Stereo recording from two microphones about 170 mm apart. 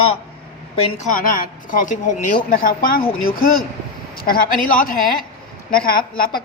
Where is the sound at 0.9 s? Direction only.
55° left (ahead or behind).